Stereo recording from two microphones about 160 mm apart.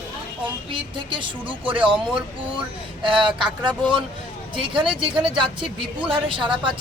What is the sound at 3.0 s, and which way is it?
Speech, 30° right (ahead or behind).